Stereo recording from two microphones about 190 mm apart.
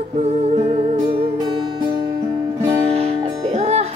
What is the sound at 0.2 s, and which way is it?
Music, 35° right (ahead or behind).